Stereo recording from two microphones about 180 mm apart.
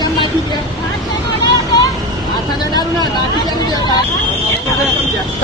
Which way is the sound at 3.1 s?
20° left (ahead or behind).